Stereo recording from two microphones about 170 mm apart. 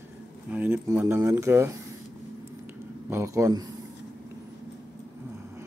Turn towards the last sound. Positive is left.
turn(degrees=-20)  # may be behind; listen again after turning